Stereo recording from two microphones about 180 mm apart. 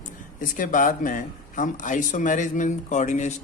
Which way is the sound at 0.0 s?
45° left (ahead or behind).